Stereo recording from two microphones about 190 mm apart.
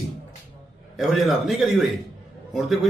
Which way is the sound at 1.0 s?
Centre (ahead or behind).